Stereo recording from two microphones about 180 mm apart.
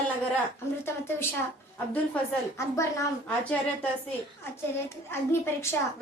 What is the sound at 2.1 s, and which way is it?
A woman's voice, 10° left (ahead or behind).